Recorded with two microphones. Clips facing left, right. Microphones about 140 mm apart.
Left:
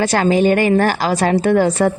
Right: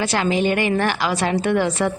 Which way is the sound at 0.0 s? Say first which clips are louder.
Left 6 dB; 40° left (ahead or behind).